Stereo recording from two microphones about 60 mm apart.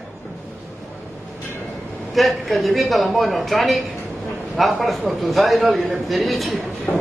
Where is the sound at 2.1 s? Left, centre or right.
Centre.